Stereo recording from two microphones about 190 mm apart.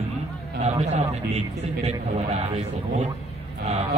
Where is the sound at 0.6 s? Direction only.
35° right (ahead or behind).